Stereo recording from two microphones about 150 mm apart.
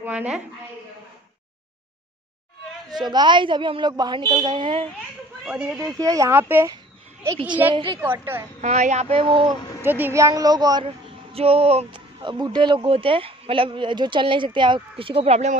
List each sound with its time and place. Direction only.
0.0 s a sound: 10° right (ahead or behind)
2.9 s speech: 30° right (ahead or behind)
5.4 s speech: 5° right (ahead or behind)
5.8 s a woman's voice: 20° right (ahead or behind)
7.7 s speech: 35° right (ahead or behind)
8.0 s a woman's voice: 15° right (ahead or behind)
8.5 s speech: 50° right (ahead or behind); by 9.6 s 35° right (ahead or behind)
9.8 s a woman's voice: 15° right (ahead or behind)
11.3 s speech: 40° right (ahead or behind)